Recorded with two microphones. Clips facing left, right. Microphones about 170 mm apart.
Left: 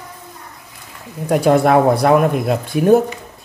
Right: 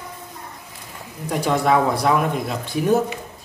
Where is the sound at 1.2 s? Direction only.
55° left (ahead or behind).